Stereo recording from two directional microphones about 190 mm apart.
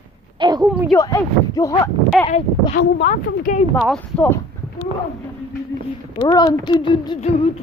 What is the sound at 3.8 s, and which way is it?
Speech, 5° left (ahead or behind).